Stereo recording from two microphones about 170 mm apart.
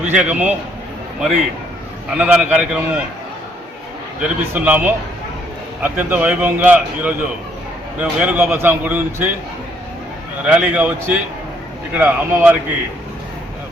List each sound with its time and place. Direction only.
0.0 s a man's voice: 10° right (ahead or behind)
2.1 s a man's voice: 5° right (ahead or behind)
4.2 s a man's voice: 10° right (ahead or behind)
10.4 s a man's voice: 5° right (ahead or behind)